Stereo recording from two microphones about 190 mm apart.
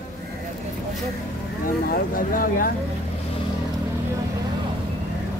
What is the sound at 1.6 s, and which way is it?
Vehicle, 45° left (ahead or behind).